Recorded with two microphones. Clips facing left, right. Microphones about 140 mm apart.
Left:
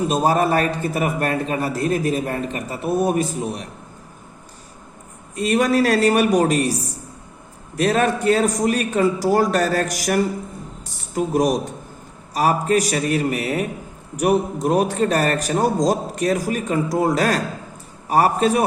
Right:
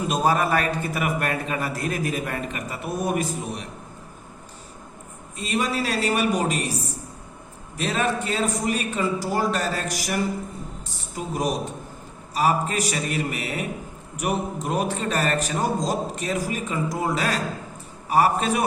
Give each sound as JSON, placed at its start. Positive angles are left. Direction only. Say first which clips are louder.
{"t": 0.1, "sound": "a man's voice", "louder": "left 2 dB", "side_deg": 35}
{"t": 5.4, "sound": "a man's voice", "louder": "left 8 dB", "side_deg": 45}
{"t": 7.8, "sound": "a man's voice", "louder": "left 6 dB", "side_deg": 50}